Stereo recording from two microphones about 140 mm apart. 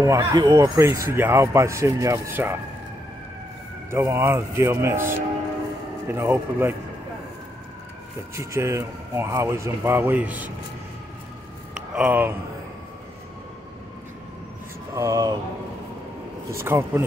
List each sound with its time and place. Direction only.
0.0 s speech: 20° right (ahead or behind)
3.9 s speech: 20° right (ahead or behind)
8.4 s speech: 20° right (ahead or behind)
11.7 s a sound: 5° right (ahead or behind)
15.0 s speech: 25° right (ahead or behind)
16.4 s speech: 20° right (ahead or behind)